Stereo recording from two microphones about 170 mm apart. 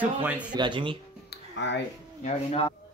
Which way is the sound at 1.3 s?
90° left.